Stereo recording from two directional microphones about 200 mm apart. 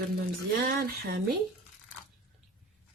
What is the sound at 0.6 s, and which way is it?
Speech, 50° right (ahead or behind).